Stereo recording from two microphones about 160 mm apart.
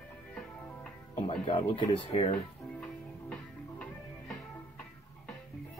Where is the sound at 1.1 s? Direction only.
40° left (ahead or behind).